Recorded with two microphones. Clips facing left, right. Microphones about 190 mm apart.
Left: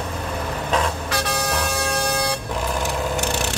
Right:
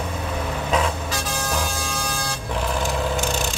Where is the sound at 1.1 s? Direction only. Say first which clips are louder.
Left 3 dB; 70° left (ahead or behind).